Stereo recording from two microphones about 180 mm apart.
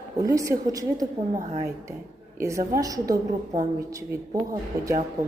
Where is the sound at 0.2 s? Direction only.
20° right (ahead or behind).